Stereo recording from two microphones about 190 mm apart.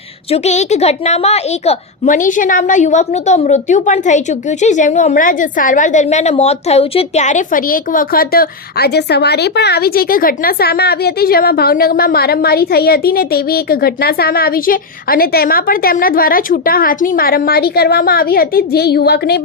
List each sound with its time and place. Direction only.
0.3 s a woman's voice: 35° left (ahead or behind); by 19.4 s 60° left (ahead or behind)